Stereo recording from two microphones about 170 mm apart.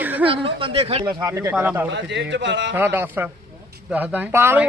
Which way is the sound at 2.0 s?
90° right.